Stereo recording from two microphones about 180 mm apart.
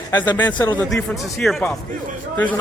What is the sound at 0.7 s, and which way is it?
Speech, centre (ahead or behind).